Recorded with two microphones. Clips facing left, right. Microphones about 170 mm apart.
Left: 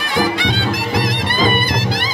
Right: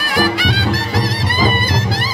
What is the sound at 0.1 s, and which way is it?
Music, 20° left (ahead or behind).